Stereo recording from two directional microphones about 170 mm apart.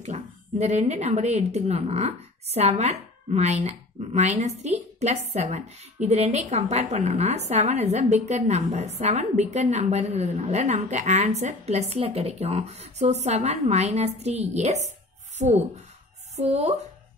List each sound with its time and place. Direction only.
0.0 s speech: 40° right (ahead or behind)